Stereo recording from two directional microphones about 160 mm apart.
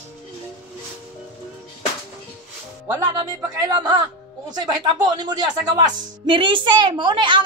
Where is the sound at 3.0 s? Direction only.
25° right (ahead or behind).